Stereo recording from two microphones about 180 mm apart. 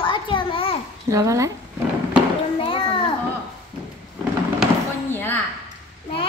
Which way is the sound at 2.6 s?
30° left (ahead or behind).